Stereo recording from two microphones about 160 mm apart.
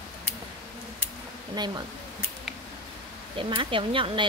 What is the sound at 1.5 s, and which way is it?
Speech, 25° right (ahead or behind).